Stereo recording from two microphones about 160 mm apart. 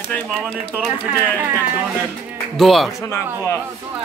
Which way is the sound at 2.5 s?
Centre (ahead or behind).